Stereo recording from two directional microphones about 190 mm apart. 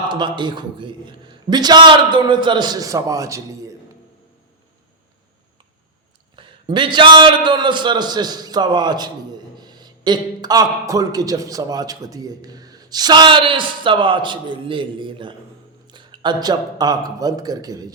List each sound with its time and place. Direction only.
0.1 s a man's voice: 25° right (ahead or behind)
6.3 s a man's voice: 25° right (ahead or behind)